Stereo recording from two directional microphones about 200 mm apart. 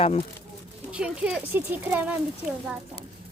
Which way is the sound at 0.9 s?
5° right (ahead or behind).